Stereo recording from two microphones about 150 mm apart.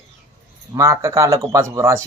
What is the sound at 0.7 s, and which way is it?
Speech, 20° right (ahead or behind).